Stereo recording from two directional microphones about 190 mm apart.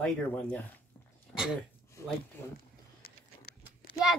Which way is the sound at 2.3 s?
10° left (ahead or behind).